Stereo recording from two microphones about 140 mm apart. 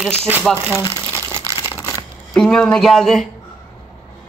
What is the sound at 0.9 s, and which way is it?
Crumpling, 15° right (ahead or behind).